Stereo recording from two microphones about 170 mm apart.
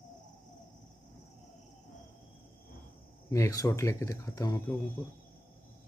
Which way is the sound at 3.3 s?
20° left (ahead or behind).